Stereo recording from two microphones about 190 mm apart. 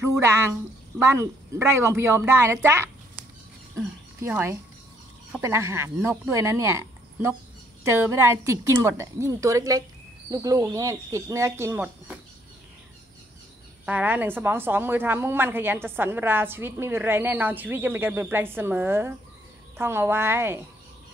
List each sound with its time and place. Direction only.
0.2 s a woman's voice: 15° right (ahead or behind)
13.8 s a woman's voice: 10° right (ahead or behind)